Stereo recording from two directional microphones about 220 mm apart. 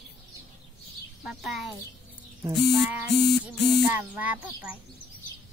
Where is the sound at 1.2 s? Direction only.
Centre (ahead or behind).